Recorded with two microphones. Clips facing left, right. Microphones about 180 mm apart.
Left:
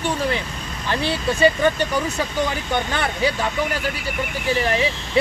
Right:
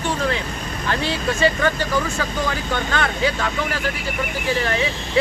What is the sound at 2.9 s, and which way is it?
Speech, 15° left (ahead or behind).